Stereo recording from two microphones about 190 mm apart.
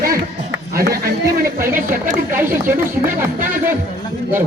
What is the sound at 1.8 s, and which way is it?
Speech, 45° right (ahead or behind).